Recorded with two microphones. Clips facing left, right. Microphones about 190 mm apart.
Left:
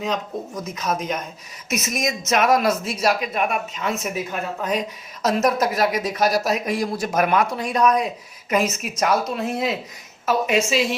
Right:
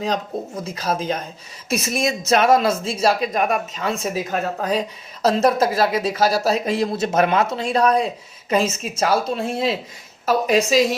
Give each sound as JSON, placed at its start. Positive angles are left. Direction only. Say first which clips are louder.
{"t": 0.0, "sound": "a woman's voice", "louder": "right 2 dB", "side_deg": -30}